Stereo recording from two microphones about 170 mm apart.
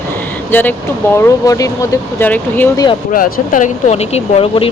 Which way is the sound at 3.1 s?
55° left (ahead or behind).